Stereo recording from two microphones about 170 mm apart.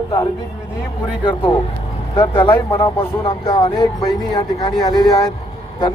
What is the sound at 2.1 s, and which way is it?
Speech, 30° left (ahead or behind).